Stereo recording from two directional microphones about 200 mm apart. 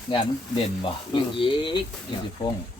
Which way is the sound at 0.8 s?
25° left (ahead or behind).